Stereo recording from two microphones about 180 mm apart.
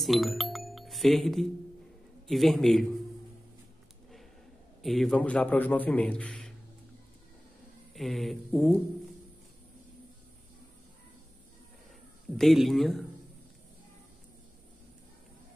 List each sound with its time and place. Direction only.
0.0 s music: centre (ahead or behind)
2.2 s speech: centre (ahead or behind)
4.8 s a man's voice: centre (ahead or behind)
7.9 s speech: centre (ahead or behind)
12.4 s speech: centre (ahead or behind)